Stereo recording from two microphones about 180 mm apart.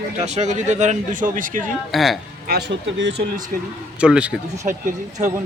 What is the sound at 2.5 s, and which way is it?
Speech, 70° right (ahead or behind).